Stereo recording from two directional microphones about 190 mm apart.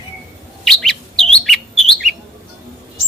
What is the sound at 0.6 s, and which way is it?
Bird, centre (ahead or behind).